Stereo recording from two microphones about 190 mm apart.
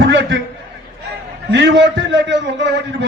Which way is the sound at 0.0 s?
65° right (ahead or behind).